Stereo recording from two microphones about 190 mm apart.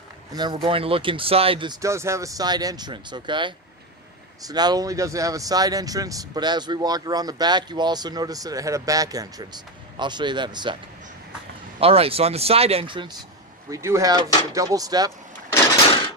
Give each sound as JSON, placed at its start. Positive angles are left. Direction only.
{"t": 0.3, "sound": "speech", "side_deg": -20}
{"t": 11.8, "sound": "speech", "side_deg": -30}
{"t": 13.7, "sound": "speech", "side_deg": -15}